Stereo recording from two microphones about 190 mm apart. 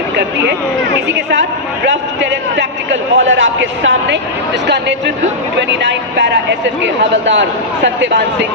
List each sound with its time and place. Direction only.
1.0 s a man's voice: 65° right (ahead or behind)
4.6 s a man's voice: 65° right (ahead or behind)